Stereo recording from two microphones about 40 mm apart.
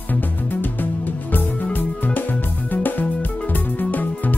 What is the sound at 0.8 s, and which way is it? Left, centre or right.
Music, left.